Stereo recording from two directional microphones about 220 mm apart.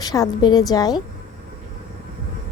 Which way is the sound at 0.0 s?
15° left (ahead or behind).